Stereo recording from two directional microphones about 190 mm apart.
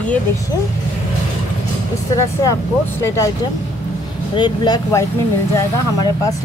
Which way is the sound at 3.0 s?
15° left (ahead or behind).